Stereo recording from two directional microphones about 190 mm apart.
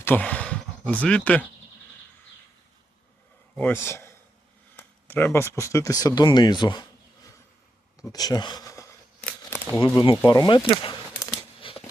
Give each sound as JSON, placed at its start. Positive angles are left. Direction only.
{"t": 0.0, "sound": "speech", "side_deg": 10}
{"t": 3.5, "sound": "a man's voice", "side_deg": 10}
{"t": 8.1, "sound": "speech", "side_deg": 20}
{"t": 9.2, "sound": "crumpling", "side_deg": 15}
{"t": 10.2, "sound": "speech", "side_deg": 25}
{"t": 11.6, "sound": "a sound", "side_deg": 25}